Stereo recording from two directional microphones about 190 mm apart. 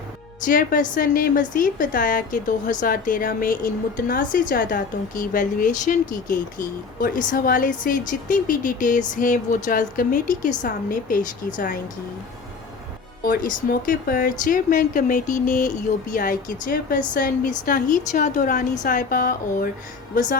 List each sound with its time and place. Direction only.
0.4 s a woman's voice: 45° left (ahead or behind)
13.2 s a woman's voice: 50° left (ahead or behind)